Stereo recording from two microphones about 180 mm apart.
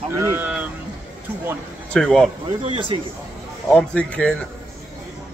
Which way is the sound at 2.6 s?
30° right (ahead or behind).